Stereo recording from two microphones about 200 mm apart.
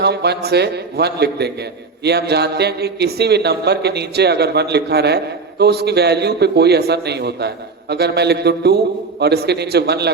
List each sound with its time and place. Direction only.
0.0 s a man's voice: 55° right (ahead or behind)